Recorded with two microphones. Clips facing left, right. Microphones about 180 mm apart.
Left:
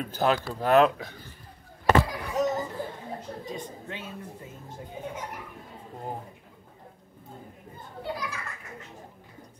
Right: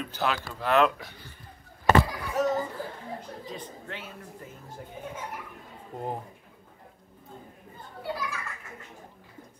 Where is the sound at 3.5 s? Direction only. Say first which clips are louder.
Left 2 dB; 20° left (ahead or behind).